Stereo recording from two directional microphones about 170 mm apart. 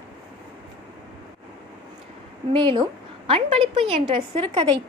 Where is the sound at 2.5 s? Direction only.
30° right (ahead or behind).